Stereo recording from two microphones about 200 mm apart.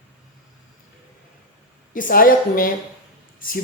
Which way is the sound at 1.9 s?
45° left (ahead or behind).